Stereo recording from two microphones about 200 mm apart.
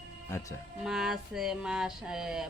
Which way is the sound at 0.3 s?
15° left (ahead or behind).